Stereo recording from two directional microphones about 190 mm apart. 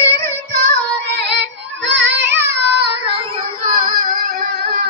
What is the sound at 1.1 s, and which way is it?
Child singing, 60° right (ahead or behind).